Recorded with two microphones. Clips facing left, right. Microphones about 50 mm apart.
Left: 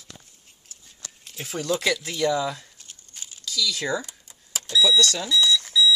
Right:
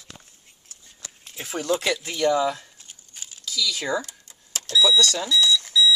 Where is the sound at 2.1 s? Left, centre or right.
Right.